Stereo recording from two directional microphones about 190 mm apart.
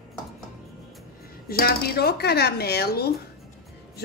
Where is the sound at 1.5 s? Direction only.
55° left (ahead or behind).